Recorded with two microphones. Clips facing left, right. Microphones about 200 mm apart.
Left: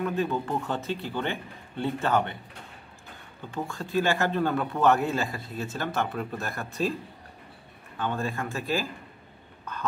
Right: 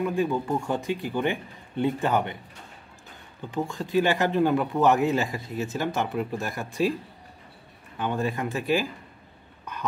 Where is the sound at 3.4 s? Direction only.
15° right (ahead or behind).